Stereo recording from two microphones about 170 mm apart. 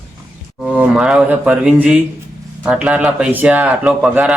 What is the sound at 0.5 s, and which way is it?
Speech, 5° right (ahead or behind).